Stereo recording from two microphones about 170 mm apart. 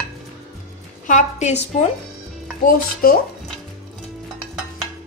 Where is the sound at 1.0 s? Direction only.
45° left (ahead or behind).